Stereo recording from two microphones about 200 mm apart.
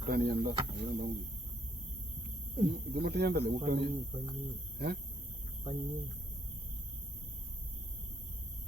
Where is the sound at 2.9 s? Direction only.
55° right (ahead or behind).